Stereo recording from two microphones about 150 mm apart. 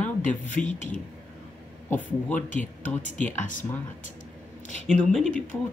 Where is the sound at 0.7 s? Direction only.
55° left (ahead or behind).